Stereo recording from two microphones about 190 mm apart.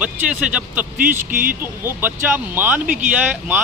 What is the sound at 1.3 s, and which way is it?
Speech, 50° right (ahead or behind).